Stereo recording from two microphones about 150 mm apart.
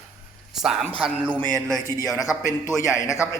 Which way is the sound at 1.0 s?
10° right (ahead or behind).